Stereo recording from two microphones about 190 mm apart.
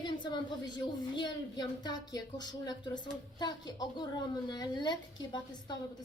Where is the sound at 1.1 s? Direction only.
20° left (ahead or behind).